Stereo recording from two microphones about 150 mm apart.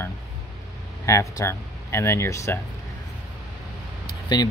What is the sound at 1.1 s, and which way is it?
Speech, 20° left (ahead or behind).